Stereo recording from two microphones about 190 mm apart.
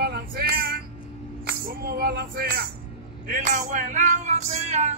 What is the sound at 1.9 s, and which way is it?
Speech, 55° right (ahead or behind).